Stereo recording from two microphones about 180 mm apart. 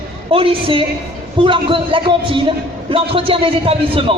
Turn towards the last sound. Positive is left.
turn(degrees=-30)  # may be behind; listen again after turning